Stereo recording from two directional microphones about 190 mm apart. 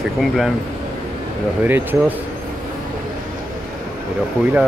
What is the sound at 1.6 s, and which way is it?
Speech, 10° right (ahead or behind).